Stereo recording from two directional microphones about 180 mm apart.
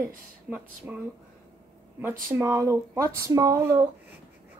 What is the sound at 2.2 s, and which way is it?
Speech, 15° right (ahead or behind).